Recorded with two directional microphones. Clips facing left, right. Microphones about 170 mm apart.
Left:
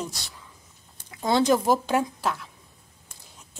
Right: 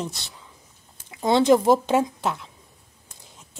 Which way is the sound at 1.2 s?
25° right (ahead or behind).